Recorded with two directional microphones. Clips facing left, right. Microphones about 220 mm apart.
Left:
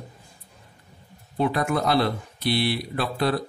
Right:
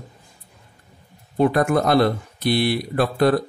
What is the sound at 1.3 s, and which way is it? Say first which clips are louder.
Speech: right 6 dB; 50° right (ahead or behind).